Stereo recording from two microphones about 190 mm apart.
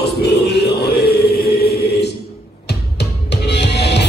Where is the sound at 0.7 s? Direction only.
55° left (ahead or behind).